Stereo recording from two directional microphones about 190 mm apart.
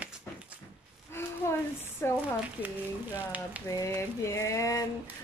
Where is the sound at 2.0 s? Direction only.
15° left (ahead or behind).